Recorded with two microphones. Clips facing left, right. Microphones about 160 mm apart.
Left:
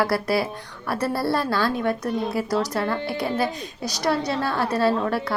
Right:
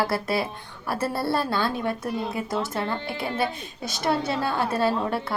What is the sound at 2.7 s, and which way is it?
Speech, 25° right (ahead or behind).